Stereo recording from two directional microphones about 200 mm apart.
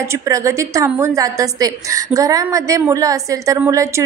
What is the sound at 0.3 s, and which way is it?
A woman's voice, 15° right (ahead or behind).